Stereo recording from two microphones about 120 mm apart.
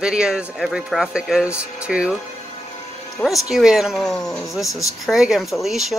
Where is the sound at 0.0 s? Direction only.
5° right (ahead or behind).